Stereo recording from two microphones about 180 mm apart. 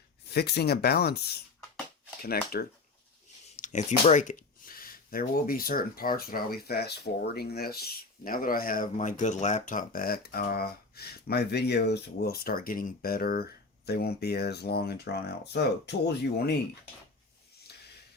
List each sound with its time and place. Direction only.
0.3 s speech: 65° left (ahead or behind)
3.5 s speech: 45° left (ahead or behind); by 16.6 s 65° left (ahead or behind)